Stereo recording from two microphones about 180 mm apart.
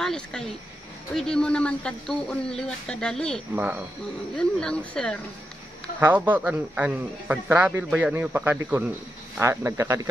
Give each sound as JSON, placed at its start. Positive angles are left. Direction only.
{"t": 0.0, "sound": "speech", "side_deg": 5}
{"t": 3.5, "sound": "speech", "side_deg": -10}
{"t": 4.4, "sound": "speech", "side_deg": 5}
{"t": 5.9, "sound": "speech", "side_deg": -10}